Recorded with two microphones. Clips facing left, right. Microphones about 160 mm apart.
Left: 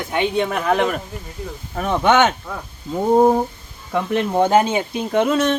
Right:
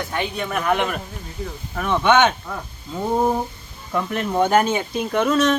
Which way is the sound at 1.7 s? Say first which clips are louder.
Left 1 dB; 40° left (ahead or behind).